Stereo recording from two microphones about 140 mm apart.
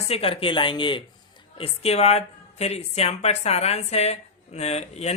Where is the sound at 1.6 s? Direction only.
50° left (ahead or behind).